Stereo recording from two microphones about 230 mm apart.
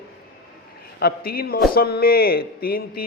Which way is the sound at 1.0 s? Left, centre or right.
Left.